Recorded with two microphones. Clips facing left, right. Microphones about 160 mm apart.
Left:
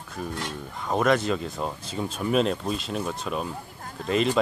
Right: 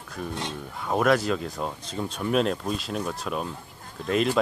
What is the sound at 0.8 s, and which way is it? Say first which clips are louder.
Speech: even; centre (ahead or behind).